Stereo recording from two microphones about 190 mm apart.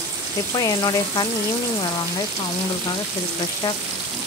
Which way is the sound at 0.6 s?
20° left (ahead or behind).